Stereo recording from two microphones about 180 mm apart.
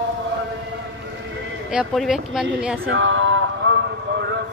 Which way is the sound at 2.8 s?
90° right.